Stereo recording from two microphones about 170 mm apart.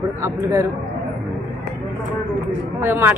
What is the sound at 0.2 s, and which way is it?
Speech, 15° right (ahead or behind).